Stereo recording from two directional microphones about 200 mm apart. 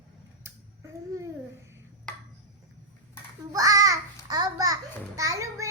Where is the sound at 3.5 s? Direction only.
15° right (ahead or behind).